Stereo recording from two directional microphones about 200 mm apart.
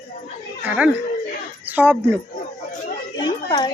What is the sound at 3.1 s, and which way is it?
Children playing, 25° left (ahead or behind).